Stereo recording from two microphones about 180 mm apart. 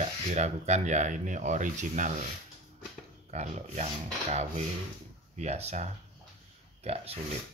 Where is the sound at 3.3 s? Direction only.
35° right (ahead or behind).